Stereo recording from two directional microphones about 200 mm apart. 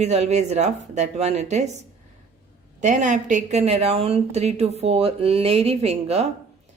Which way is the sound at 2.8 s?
35° right (ahead or behind).